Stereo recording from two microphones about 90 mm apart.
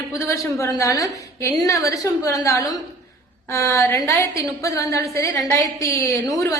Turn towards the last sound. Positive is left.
turn(degrees=35)  # may be behind; listen again after turning